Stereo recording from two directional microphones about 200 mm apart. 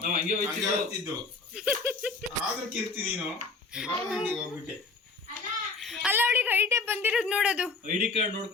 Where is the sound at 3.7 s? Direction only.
5° right (ahead or behind).